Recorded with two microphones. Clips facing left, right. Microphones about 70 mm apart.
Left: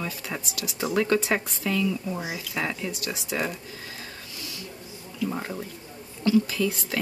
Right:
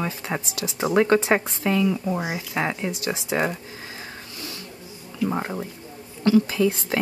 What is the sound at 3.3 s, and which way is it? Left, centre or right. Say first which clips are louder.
Speech: right 5 dB; right.